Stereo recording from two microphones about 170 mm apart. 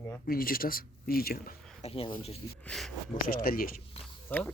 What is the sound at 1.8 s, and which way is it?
Speech, 35° left (ahead or behind).